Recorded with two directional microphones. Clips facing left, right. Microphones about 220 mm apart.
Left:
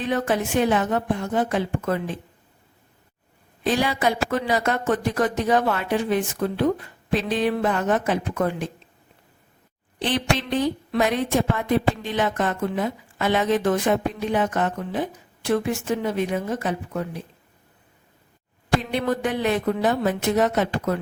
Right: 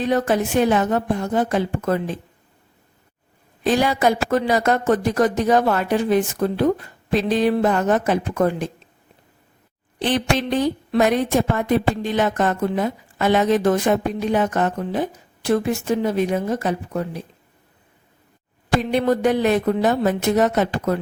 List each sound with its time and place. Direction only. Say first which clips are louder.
0.0 s speech: right 4 dB; 40° right (ahead or behind)
3.6 s speech: right 4 dB; 45° right (ahead or behind)
10.0 s a woman's voice: right 3 dB; 45° right (ahead or behind)
18.9 s speech: right 6 dB; 40° right (ahead or behind)